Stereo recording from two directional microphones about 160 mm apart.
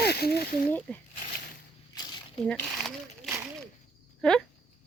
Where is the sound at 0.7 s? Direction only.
10° left (ahead or behind).